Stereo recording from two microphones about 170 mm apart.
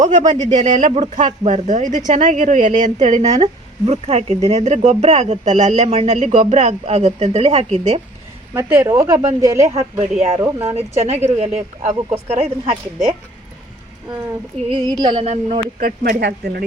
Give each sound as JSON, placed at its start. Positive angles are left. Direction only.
{"t": 0.0, "sound": "a woman's voice", "side_deg": -45}
{"t": 0.9, "sound": "speech", "side_deg": -30}
{"t": 1.1, "sound": "a woman's voice", "side_deg": -45}
{"t": 8.5, "sound": "speech", "side_deg": -15}
{"t": 10.0, "sound": "speech", "side_deg": -40}
{"t": 14.7, "sound": "speech", "side_deg": -25}
{"t": 15.2, "sound": "speech", "side_deg": -40}
{"t": 15.8, "sound": "speech", "side_deg": -70}